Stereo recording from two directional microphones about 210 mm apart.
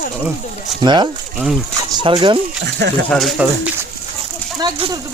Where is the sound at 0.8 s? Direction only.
20° right (ahead or behind).